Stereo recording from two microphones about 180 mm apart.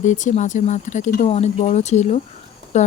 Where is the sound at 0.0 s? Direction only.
45° left (ahead or behind).